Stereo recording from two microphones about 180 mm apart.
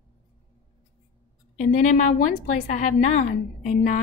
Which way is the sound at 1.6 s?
45° left (ahead or behind).